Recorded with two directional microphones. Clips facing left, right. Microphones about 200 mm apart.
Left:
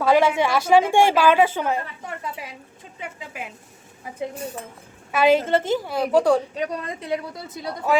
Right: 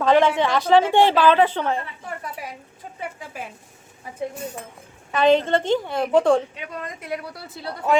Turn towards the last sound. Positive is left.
turn(degrees=20)  # may be behind; listen again after turning